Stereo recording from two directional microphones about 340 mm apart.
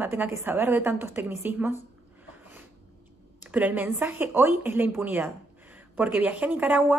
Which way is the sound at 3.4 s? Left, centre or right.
Centre.